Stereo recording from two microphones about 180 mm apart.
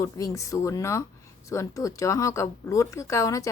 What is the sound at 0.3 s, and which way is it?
Speech, 15° left (ahead or behind).